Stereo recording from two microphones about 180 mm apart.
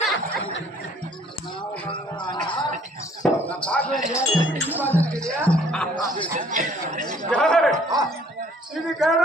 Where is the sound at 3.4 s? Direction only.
5° left (ahead or behind).